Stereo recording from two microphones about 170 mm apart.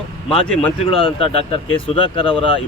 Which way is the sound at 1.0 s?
30° left (ahead or behind).